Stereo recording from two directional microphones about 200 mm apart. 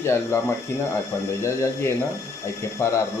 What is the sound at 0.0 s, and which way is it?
Speech, 15° left (ahead or behind).